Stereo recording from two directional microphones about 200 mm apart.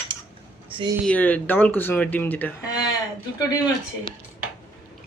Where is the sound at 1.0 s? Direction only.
10° left (ahead or behind).